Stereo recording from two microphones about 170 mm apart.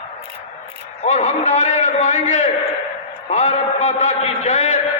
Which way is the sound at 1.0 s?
45° left (ahead or behind).